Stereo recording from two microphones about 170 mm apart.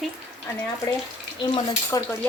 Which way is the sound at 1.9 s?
20° left (ahead or behind).